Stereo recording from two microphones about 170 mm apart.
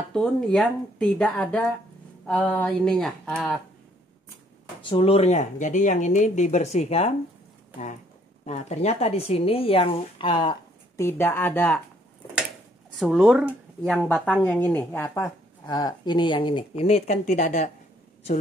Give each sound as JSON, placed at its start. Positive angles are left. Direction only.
{"t": 0.1, "sound": "speech", "side_deg": 5}
{"t": 4.8, "sound": "speech", "side_deg": 30}
{"t": 8.5, "sound": "speech", "side_deg": 40}
{"t": 11.0, "sound": "speech", "side_deg": 15}
{"t": 13.0, "sound": "speech", "side_deg": -5}
{"t": 14.0, "sound": "a woman's voice", "side_deg": 10}